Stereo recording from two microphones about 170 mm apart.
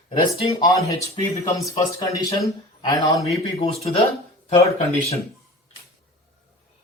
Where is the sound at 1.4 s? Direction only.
20° left (ahead or behind).